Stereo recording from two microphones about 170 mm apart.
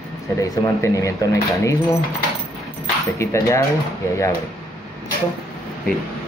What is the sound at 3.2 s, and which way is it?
Speech, 15° left (ahead or behind).